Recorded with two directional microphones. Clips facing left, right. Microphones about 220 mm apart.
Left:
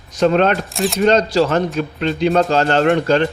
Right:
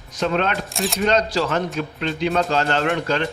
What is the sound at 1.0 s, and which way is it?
A man's voice, 30° left (ahead or behind).